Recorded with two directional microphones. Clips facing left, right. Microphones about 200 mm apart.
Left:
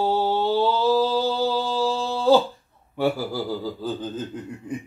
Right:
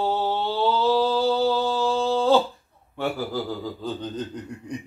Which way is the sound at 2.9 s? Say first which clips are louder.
Left 4 dB; 10° left (ahead or behind).